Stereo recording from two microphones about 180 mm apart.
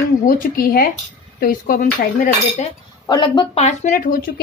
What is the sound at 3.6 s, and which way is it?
Cutlery, 45° left (ahead or behind).